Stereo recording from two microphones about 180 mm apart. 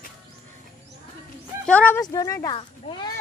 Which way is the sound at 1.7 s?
10° left (ahead or behind).